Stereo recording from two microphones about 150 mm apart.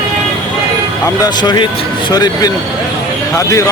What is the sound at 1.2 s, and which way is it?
Speech, 30° left (ahead or behind).